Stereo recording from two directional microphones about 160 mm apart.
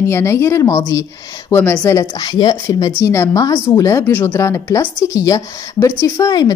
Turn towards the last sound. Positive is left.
turn(degrees=25)  # may be behind; listen again after turning